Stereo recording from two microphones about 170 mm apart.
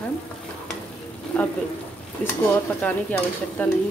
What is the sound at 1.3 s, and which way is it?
Speech, 10° left (ahead or behind).